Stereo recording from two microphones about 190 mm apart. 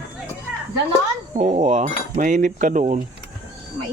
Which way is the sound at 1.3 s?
35° right (ahead or behind).